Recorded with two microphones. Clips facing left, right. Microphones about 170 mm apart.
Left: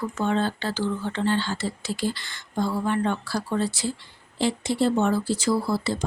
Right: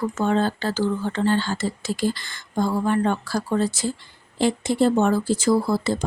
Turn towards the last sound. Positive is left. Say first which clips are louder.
# right 4 dB
turn(degrees=-50)  # may be behind; listen again after turning